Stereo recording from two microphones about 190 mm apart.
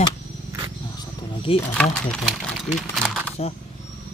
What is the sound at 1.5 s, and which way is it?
Speech, 30° left (ahead or behind).